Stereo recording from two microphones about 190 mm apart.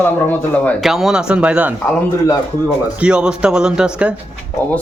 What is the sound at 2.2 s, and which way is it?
Speech, 15° left (ahead or behind).